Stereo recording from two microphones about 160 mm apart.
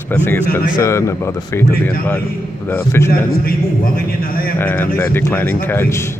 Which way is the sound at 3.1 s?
65° left (ahead or behind).